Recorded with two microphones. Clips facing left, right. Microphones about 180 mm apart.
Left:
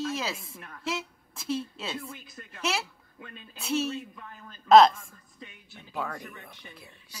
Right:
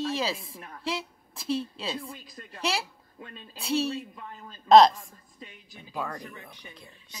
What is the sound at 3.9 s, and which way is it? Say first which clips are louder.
Speech: right 2 dB; 35° right (ahead or behind).